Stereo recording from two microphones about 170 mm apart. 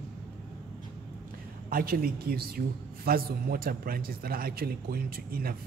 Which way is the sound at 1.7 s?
60° right (ahead or behind).